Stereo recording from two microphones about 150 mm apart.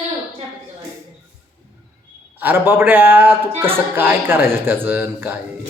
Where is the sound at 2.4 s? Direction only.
15° right (ahead or behind).